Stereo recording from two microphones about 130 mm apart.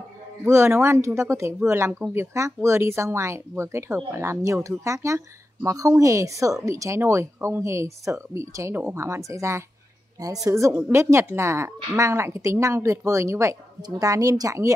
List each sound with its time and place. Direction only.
0.5 s speech: 20° right (ahead or behind)